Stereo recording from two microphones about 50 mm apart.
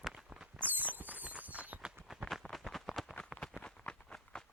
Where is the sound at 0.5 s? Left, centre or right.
Right.